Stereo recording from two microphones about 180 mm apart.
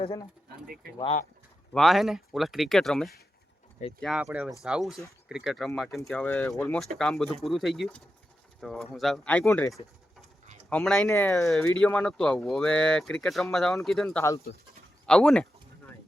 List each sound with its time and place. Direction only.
0.7 s speech: 55° right (ahead or behind)
1.7 s speech: centre (ahead or behind); by 11.4 s 15° left (ahead or behind)
11.4 s speech: 5° left (ahead or behind)
14.2 s speech: 15° left (ahead or behind)
15.0 s speech: 5° left (ahead or behind)